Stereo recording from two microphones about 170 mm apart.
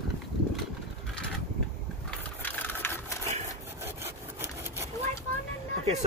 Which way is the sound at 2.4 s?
10° left (ahead or behind).